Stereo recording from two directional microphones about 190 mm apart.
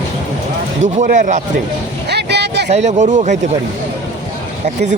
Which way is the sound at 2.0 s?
60° right (ahead or behind).